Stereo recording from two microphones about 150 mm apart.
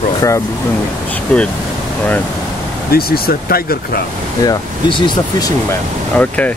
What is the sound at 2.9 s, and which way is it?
Speech, 80° left.